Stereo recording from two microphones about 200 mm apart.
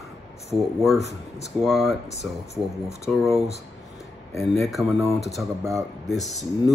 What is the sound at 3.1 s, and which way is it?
Speech, centre (ahead or behind).